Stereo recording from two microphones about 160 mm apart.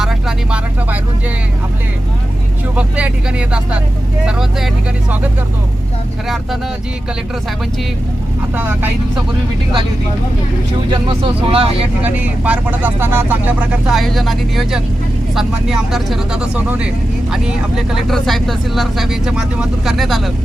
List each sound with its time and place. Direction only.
0.0 s vehicle: 5° right (ahead or behind)
2.7 s vehicle: 5° right (ahead or behind)
4.3 s speech: 5° right (ahead or behind)
6.2 s speech: centre (ahead or behind)
10.9 s speech: 35° right (ahead or behind)
12.0 s speech: 10° right (ahead or behind)
17.9 s speech: centre (ahead or behind)